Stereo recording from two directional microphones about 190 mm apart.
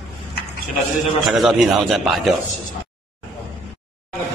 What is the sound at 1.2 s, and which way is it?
A man's voice, centre (ahead or behind).